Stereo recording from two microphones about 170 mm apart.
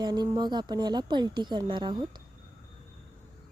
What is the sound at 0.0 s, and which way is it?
Speech, 25° right (ahead or behind).